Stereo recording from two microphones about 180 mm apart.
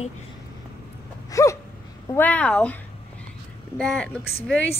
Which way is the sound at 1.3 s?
15° left (ahead or behind).